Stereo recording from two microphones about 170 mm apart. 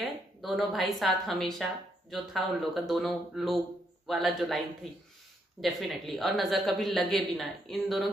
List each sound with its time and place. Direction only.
0.0 s a woman's voice: centre (ahead or behind)
5.6 s a woman's voice: centre (ahead or behind)